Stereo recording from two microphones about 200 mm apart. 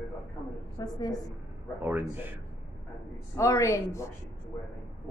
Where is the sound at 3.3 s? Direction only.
15° left (ahead or behind).